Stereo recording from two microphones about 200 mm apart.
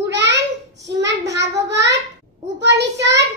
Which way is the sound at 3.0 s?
15° right (ahead or behind).